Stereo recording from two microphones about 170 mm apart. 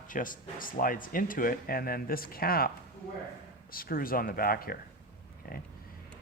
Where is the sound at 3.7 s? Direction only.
60° left (ahead or behind).